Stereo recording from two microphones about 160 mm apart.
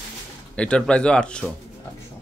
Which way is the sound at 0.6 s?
5° left (ahead or behind).